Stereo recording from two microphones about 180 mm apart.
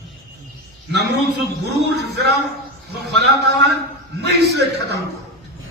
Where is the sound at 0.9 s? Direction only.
70° right (ahead or behind).